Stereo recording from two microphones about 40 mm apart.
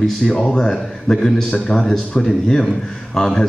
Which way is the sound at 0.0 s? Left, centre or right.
Centre.